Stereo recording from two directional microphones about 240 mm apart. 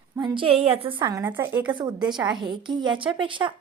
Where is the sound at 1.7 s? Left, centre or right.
Centre.